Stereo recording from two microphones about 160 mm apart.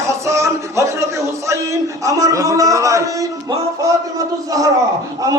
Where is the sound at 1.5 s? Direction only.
20° right (ahead or behind).